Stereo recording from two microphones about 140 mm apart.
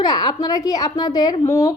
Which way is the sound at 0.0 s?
30° left (ahead or behind).